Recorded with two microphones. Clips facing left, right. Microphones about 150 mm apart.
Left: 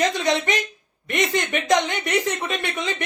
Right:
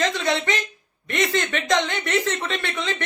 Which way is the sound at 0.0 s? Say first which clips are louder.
Left 2 dB; 15° left (ahead or behind).